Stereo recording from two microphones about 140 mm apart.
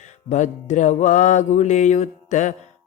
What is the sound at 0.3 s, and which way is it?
Music, 60° left (ahead or behind).